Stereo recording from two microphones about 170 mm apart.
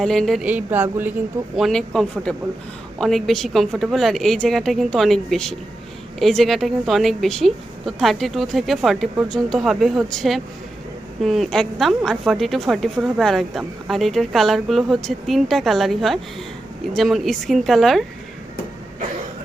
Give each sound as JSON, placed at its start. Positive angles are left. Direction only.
{"t": 0.0, "sound": "speech", "side_deg": 0}
{"t": 1.5, "sound": "a woman's voice", "side_deg": 0}